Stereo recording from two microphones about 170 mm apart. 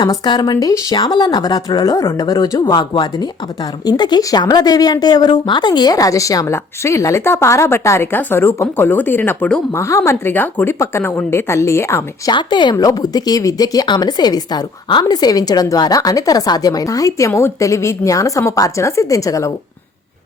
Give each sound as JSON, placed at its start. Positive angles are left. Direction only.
{"t": 0.0, "sound": "a woman's voice", "side_deg": 25}
{"t": 12.3, "sound": "a woman's voice", "side_deg": 25}